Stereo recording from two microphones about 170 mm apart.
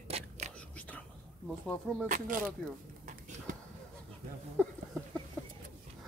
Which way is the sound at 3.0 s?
45° right (ahead or behind).